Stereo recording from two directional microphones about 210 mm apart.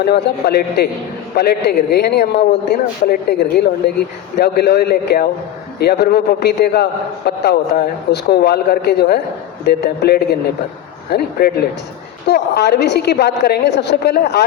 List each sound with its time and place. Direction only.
0.0 s a man's voice: 50° left (ahead or behind)